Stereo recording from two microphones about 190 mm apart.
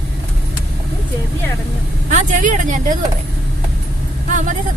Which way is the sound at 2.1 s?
40° right (ahead or behind).